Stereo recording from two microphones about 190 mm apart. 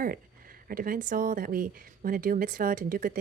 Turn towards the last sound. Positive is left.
turn(degrees=-45)  # may be behind; listen again after turning